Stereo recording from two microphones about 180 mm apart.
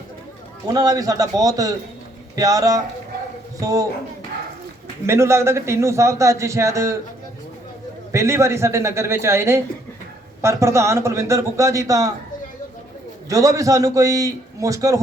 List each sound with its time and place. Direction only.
0.7 s a man's voice: 20° right (ahead or behind)
5.0 s a man's voice: 15° right (ahead or behind)
8.1 s a man's voice: 15° right (ahead or behind)
13.3 s a man's voice: 20° right (ahead or behind)